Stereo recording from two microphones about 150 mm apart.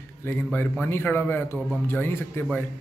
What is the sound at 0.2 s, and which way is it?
A man's voice, 15° left (ahead or behind).